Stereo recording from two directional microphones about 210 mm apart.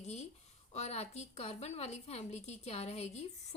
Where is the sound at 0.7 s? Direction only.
30° left (ahead or behind).